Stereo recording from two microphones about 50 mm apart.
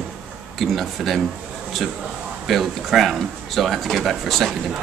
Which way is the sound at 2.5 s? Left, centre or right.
Centre.